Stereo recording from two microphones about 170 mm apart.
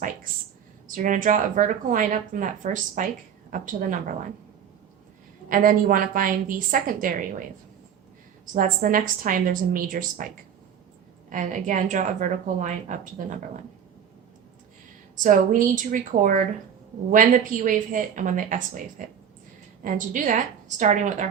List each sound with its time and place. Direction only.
0.9 s speech: 50° right (ahead or behind)
5.5 s a woman's voice: 55° right (ahead or behind)
8.5 s a woman's voice: 55° right (ahead or behind)
11.3 s speech: 50° right (ahead or behind)
15.1 s speech: 50° right (ahead or behind)